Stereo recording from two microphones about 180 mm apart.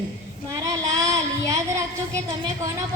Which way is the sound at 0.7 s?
20° right (ahead or behind).